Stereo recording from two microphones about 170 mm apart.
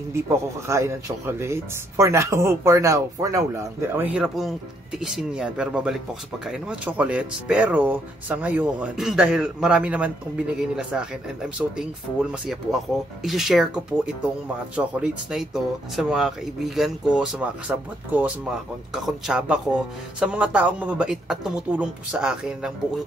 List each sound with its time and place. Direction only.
0.1 s speech: 15° right (ahead or behind)